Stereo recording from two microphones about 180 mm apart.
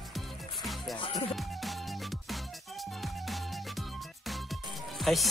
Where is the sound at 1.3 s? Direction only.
Centre (ahead or behind).